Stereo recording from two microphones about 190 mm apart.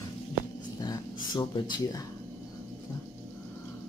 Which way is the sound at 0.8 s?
20° left (ahead or behind).